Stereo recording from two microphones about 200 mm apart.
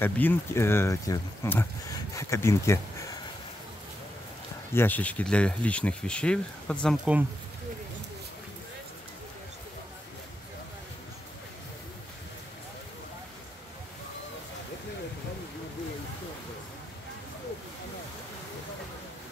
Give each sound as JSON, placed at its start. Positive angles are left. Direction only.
{"t": 0.0, "sound": "speech", "side_deg": 10}
{"t": 4.7, "sound": "speech", "side_deg": 10}